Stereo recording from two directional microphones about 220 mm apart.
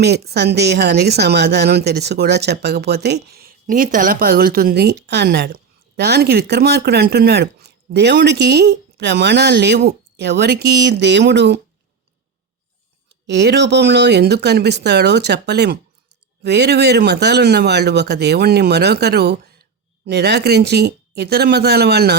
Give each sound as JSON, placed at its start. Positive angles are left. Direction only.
{"t": 0.0, "sound": "speech", "side_deg": -45}
{"t": 13.2, "sound": "speech", "side_deg": -50}